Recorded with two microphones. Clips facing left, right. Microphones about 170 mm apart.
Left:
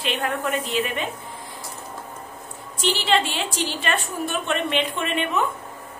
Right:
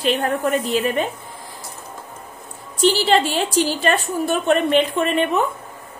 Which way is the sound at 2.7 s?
40° right (ahead or behind).